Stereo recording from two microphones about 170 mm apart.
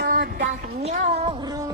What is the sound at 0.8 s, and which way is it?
Music, 40° right (ahead or behind).